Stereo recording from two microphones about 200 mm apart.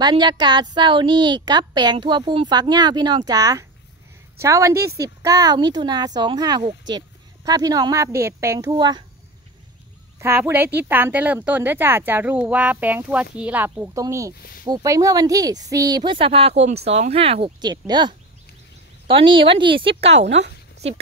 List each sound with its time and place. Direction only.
0.0 s a woman's voice: 20° right (ahead or behind)
10.1 s a woman's voice: 15° right (ahead or behind); by 20.2 s 30° right (ahead or behind)
20.2 s speech: 60° right (ahead or behind)